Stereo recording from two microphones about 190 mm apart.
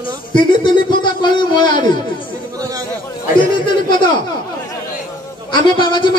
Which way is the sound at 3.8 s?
25° left (ahead or behind).